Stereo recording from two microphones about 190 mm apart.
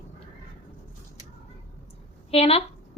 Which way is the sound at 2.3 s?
30° left (ahead or behind).